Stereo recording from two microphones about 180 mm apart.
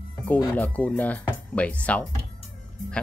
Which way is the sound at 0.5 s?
10° left (ahead or behind).